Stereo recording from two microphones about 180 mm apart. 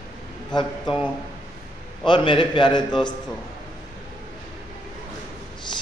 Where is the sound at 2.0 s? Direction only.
30° left (ahead or behind).